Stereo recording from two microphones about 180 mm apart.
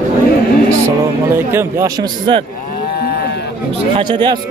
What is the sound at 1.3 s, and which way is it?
Speech, 15° right (ahead or behind).